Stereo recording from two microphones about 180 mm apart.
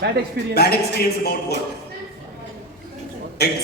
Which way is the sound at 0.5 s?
65° left (ahead or behind).